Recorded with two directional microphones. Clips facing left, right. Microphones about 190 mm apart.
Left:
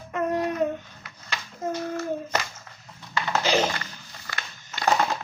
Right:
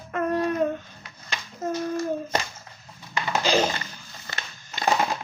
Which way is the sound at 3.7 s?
25° right (ahead or behind).